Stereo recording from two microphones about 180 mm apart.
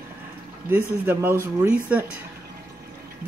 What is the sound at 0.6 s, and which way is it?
Speech, 10° right (ahead or behind).